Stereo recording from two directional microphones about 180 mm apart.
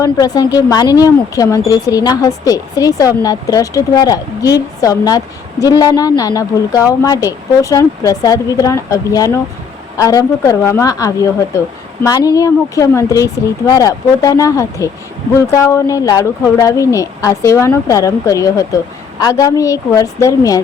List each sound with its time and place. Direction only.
0.0 s a woman's voice: 20° left (ahead or behind)